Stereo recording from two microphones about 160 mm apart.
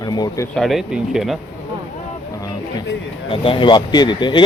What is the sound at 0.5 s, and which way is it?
Speech, centre (ahead or behind).